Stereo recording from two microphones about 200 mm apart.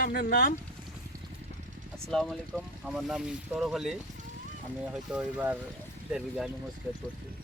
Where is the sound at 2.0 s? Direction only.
Centre (ahead or behind).